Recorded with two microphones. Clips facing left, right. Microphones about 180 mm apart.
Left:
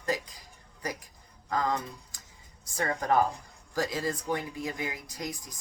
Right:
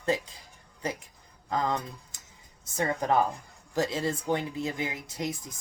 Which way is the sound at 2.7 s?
20° right (ahead or behind).